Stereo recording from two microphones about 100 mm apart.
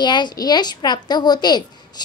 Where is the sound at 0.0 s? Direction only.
45° left (ahead or behind).